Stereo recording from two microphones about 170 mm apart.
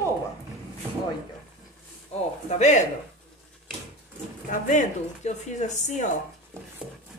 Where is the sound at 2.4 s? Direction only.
45° left (ahead or behind).